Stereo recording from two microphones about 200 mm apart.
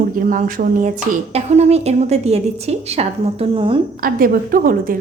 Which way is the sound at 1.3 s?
35° right (ahead or behind).